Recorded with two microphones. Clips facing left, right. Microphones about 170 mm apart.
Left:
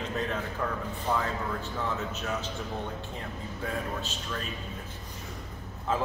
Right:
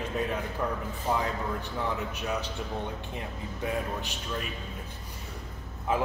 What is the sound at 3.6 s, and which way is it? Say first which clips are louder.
Speech: right 2 dB; 15° right (ahead or behind).